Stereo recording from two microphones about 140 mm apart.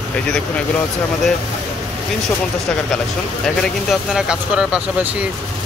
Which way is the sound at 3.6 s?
Centre (ahead or behind).